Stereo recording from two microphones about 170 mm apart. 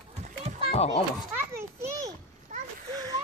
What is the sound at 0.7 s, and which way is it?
Speech, 35° left (ahead or behind).